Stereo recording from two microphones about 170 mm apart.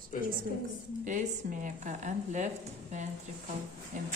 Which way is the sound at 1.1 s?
45° right (ahead or behind).